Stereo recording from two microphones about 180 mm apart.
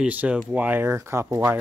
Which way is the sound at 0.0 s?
10° right (ahead or behind).